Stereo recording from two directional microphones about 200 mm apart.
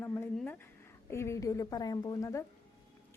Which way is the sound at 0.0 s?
10° left (ahead or behind).